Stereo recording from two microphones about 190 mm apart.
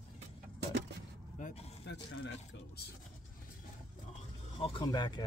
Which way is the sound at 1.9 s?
70° left (ahead or behind).